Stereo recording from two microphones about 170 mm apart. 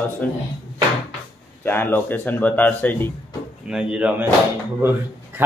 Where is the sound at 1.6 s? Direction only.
10° left (ahead or behind).